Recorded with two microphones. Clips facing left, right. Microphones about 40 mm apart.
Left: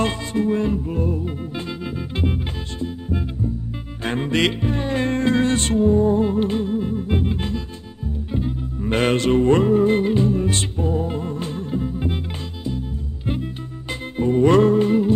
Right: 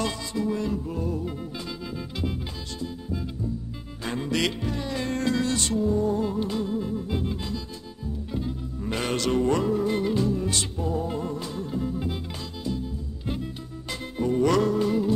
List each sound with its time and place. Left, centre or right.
0.0 s music: left
8.9 s music: left
14.1 s music: left